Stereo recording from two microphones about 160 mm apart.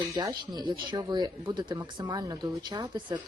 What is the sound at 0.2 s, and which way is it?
Speech, 25° right (ahead or behind).